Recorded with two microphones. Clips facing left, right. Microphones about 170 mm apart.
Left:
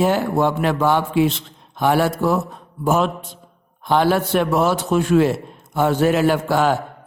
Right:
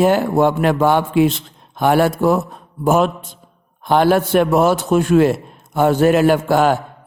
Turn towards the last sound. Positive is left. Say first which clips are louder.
# right 3 dB
turn(degrees=-50)  # may be behind; listen again after turning